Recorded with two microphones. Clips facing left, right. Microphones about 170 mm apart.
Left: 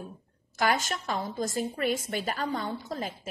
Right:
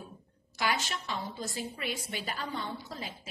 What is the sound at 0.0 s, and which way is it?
A woman's voice, 45° left (ahead or behind).